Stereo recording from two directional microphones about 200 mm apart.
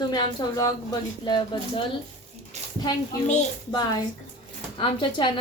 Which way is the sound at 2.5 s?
35° right (ahead or behind).